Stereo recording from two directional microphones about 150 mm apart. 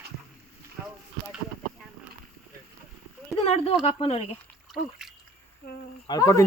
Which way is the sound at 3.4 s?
40° left (ahead or behind).